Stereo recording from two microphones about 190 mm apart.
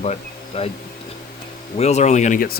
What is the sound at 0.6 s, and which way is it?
Speech, 30° left (ahead or behind).